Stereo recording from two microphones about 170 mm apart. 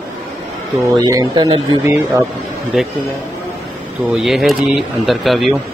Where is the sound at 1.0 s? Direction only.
20° right (ahead or behind).